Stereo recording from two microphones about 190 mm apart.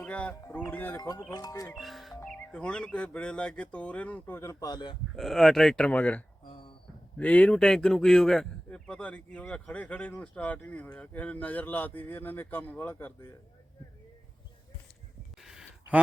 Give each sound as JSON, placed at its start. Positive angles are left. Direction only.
{"t": 0.0, "sound": "speech", "side_deg": 5}
{"t": 1.8, "sound": "speech", "side_deg": 0}
{"t": 5.1, "sound": "speech", "side_deg": 0}
{"t": 6.5, "sound": "a sound", "side_deg": 25}
{"t": 7.2, "sound": "speech", "side_deg": 5}
{"t": 15.4, "sound": "a sound", "side_deg": -5}